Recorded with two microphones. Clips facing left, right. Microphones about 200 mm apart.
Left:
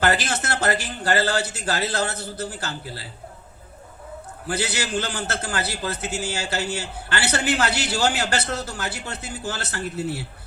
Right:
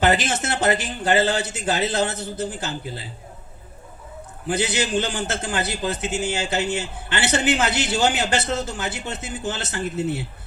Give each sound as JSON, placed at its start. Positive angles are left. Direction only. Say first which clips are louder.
{"t": 0.0, "sound": "a man's voice", "louder": "right 2 dB", "side_deg": -20}
{"t": 4.4, "sound": "a man's voice", "louder": "right 4 dB", "side_deg": -20}